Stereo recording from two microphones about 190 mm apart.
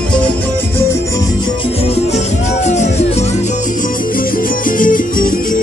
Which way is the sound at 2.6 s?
35° left (ahead or behind).